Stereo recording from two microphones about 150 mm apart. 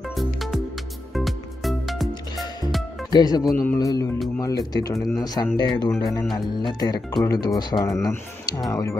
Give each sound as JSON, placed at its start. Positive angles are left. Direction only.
{"t": 0.1, "sound": "music", "side_deg": 0}
{"t": 2.3, "sound": "music", "side_deg": 25}
{"t": 3.1, "sound": "speech", "side_deg": 25}